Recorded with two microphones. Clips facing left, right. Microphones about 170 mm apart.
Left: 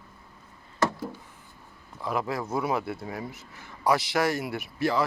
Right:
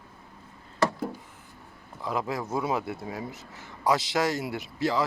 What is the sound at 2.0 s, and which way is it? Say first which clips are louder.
Speech: left 1 dB; 20° right (ahead or behind).